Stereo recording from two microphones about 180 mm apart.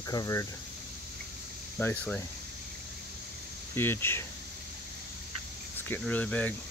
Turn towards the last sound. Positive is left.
turn(degrees=10)  # may be behind; listen again after turning